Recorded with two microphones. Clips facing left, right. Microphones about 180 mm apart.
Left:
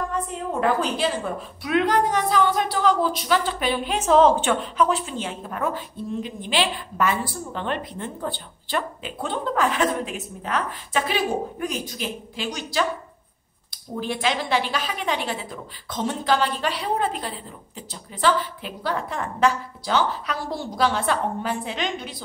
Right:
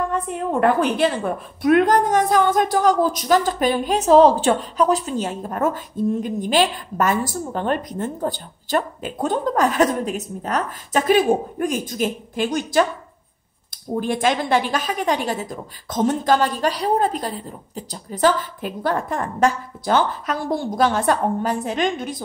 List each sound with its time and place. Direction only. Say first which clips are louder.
0.1 s a woman's voice: right 5 dB; 60° right (ahead or behind)
13.9 s a woman's voice: right 5 dB; 50° right (ahead or behind)